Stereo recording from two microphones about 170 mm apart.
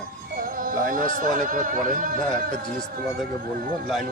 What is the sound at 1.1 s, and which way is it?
A man's voice, 50° right (ahead or behind).